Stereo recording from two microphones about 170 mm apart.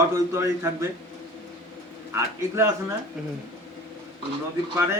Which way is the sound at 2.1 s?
15° right (ahead or behind).